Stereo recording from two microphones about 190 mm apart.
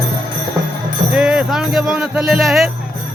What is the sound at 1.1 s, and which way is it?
Speech, 5° right (ahead or behind).